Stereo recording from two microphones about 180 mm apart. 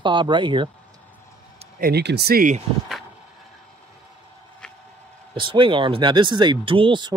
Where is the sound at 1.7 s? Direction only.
60° right (ahead or behind).